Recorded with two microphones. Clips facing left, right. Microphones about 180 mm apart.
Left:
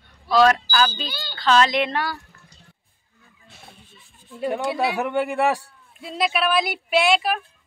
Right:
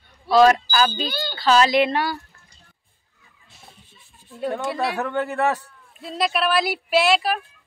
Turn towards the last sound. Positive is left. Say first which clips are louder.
# right 1 dB
turn(degrees=0)  # may be behind; listen again after turning